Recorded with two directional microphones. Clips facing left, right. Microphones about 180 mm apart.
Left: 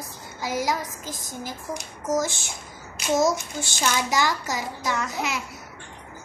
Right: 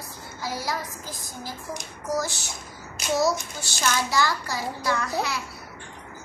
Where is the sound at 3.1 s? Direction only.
20° left (ahead or behind).